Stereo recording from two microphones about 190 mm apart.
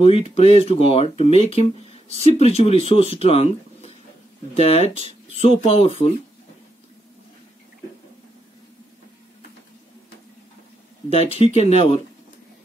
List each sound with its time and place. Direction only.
0.0 s speech: 30° left (ahead or behind)
11.1 s speech: 30° left (ahead or behind)